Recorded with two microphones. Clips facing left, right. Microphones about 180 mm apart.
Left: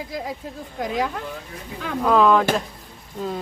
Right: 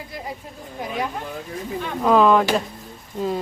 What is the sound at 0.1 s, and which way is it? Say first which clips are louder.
Speech: left 3 dB; 90° left.